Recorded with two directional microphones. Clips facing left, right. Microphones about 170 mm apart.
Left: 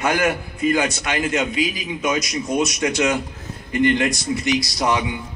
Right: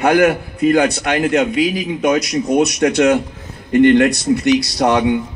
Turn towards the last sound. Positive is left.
turn(degrees=-65)  # may be behind; listen again after turning